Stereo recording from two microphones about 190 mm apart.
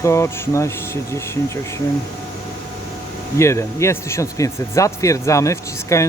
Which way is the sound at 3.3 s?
15° left (ahead or behind).